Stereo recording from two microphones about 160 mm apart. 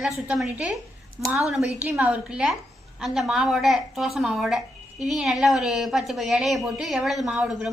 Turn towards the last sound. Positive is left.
turn(degrees=-5)  # may be behind; listen again after turning